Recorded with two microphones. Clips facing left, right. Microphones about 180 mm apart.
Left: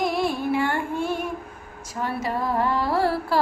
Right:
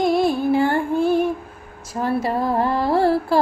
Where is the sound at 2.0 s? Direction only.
30° right (ahead or behind).